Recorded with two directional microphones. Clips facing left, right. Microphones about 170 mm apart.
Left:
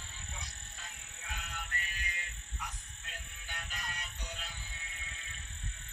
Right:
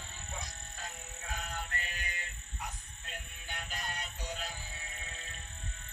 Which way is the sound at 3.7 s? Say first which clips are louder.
Right 5 dB; 30° right (ahead or behind).